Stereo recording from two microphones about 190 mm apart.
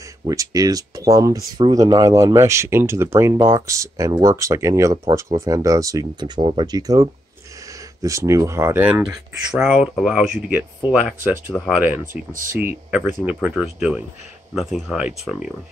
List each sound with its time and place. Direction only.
0.2 s speech: 20° right (ahead or behind)
9.5 s speech: centre (ahead or behind)
12.1 s speech: 45° right (ahead or behind)
12.5 s speech: 10° right (ahead or behind)